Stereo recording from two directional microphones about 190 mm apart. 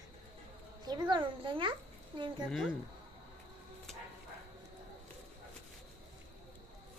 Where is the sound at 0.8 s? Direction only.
25° right (ahead or behind).